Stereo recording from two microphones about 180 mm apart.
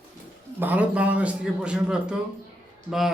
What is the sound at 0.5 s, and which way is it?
A man's voice, 10° right (ahead or behind).